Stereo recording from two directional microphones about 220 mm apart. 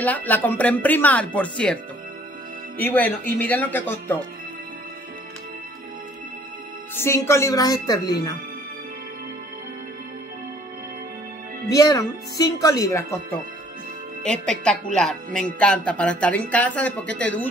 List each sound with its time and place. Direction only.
0.0 s speech: 5° left (ahead or behind)
2.8 s speech: 10° left (ahead or behind)
7.0 s speech: 10° left (ahead or behind)
11.7 s speech: 15° left (ahead or behind)
14.2 s speech: 5° left (ahead or behind)